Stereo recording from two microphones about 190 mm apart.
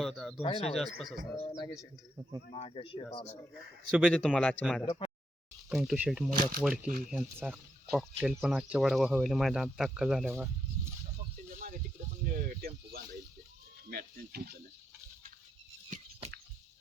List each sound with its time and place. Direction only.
0.0 s speech: centre (ahead or behind)
0.4 s speech: 25° left (ahead or behind)
0.7 s speech: centre (ahead or behind)
1.5 s a man's voice: 15° left (ahead or behind)
2.5 s speech: 30° left (ahead or behind)
3.9 s speech: centre (ahead or behind)
4.9 s speech: 25° left (ahead or behind)
5.6 s speech: centre (ahead or behind)
6.3 s speech: 50° right (ahead or behind)
7.1 s speech: 10° right (ahead or behind)
11.5 s a sound: 45° right (ahead or behind)
12.2 s speech: 50° right (ahead or behind)
15.9 s a sound: 40° right (ahead or behind)